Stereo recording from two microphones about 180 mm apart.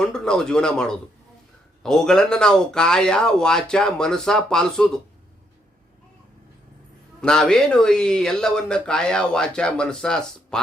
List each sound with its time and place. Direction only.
0.0 s speech: 5° left (ahead or behind)
7.2 s speech: 5° left (ahead or behind)